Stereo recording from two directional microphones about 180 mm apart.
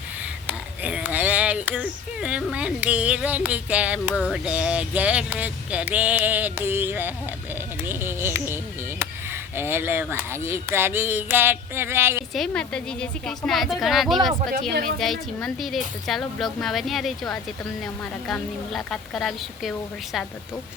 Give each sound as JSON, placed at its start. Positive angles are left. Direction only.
{"t": 0.4, "sound": "speech", "side_deg": -10}
{"t": 12.3, "sound": "a woman's voice", "side_deg": 5}
{"t": 14.7, "sound": "speech", "side_deg": -55}
{"t": 14.9, "sound": "a woman's voice", "side_deg": 0}